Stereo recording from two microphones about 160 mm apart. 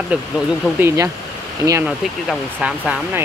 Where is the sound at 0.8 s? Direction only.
20° right (ahead or behind).